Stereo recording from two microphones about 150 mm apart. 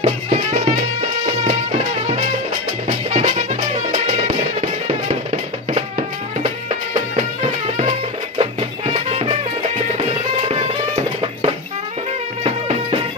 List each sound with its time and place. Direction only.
0.0 s music: 50° right (ahead or behind)
8.4 s music: 40° right (ahead or behind)
10.5 s music: 40° right (ahead or behind)